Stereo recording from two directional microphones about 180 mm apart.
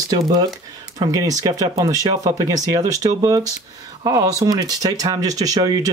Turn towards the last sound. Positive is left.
turn(degrees=-20)  # may be behind; listen again after turning